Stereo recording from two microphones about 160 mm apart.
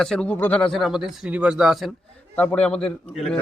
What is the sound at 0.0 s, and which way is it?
Speech, 5° left (ahead or behind).